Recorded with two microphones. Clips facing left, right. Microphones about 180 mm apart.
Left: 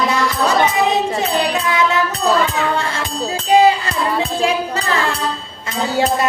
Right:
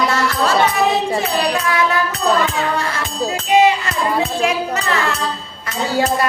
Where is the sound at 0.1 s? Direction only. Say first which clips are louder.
Even; 15° left (ahead or behind).